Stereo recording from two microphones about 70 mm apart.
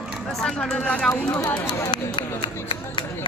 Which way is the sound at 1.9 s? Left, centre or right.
Left.